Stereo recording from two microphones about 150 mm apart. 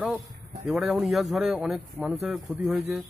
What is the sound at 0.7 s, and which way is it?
Speech, centre (ahead or behind).